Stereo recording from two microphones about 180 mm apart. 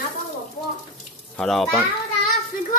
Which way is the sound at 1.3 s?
Centre (ahead or behind).